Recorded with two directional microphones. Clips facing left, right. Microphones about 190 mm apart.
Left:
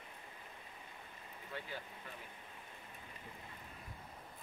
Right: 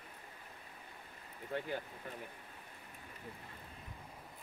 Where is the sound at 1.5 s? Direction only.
50° right (ahead or behind).